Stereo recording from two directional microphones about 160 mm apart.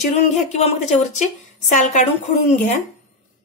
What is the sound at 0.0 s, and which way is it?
A woman's voice, 45° left (ahead or behind).